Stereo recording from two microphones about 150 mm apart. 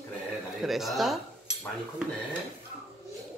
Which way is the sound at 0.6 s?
Centre (ahead or behind).